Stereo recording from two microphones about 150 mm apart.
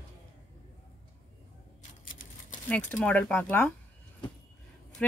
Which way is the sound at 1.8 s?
60° left (ahead or behind).